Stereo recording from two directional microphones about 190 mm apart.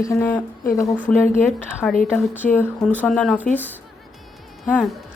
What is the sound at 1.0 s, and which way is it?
Speech, 45° left (ahead or behind).